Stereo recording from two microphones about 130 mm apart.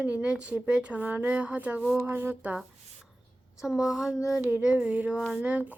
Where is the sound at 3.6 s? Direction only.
5° right (ahead or behind).